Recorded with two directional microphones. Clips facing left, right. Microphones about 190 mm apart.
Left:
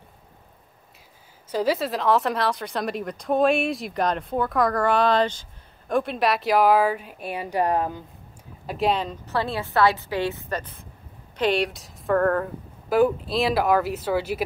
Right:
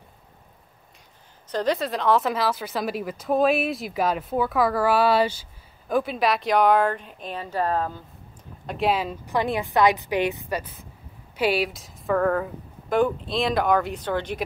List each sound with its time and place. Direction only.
1.5 s a woman's voice: 5° left (ahead or behind)
8.6 s a woman's voice: centre (ahead or behind)